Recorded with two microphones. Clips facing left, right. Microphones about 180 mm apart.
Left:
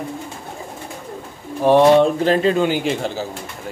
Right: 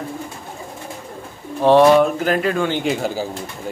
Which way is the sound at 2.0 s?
30° left (ahead or behind).